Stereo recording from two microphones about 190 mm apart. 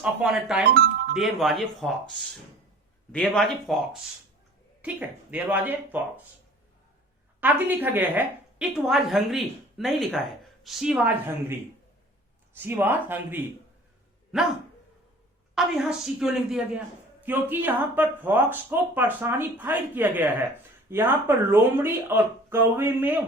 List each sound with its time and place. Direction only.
0.0 s a woman's voice: 5° right (ahead or behind)
0.7 s music: 60° right (ahead or behind)
1.1 s a woman's voice: centre (ahead or behind)
7.4 s a woman's voice: 10° right (ahead or behind)
12.5 s a man's voice: 10° right (ahead or behind)
15.5 s a man's voice: centre (ahead or behind)